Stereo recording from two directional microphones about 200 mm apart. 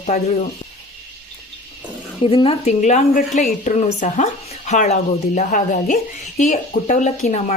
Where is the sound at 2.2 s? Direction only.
30° left (ahead or behind).